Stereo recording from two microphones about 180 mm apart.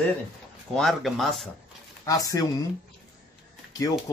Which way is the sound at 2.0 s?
20° left (ahead or behind).